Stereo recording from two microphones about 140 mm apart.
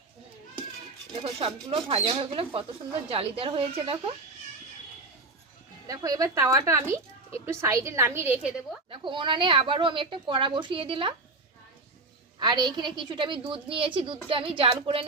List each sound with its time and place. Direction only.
1.1 s a woman's voice: 45° right (ahead or behind)
5.9 s a woman's voice: 25° right (ahead or behind)
8.9 s a woman's voice: 35° right (ahead or behind)
12.4 s a woman's voice: 30° right (ahead or behind)